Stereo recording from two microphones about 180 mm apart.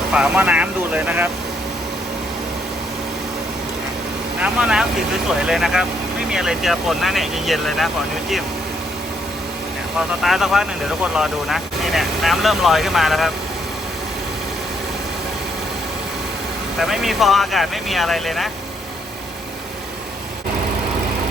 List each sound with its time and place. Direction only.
0.1 s speech: 5° right (ahead or behind)
4.4 s speech: 5° right (ahead or behind)
10.2 s speech: centre (ahead or behind)
16.8 s speech: centre (ahead or behind)